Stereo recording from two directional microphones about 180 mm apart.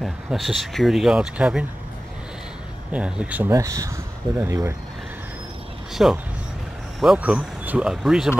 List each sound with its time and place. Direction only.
0.0 s speech: centre (ahead or behind)
2.9 s speech: 5° right (ahead or behind)
6.0 s speech: 5° right (ahead or behind)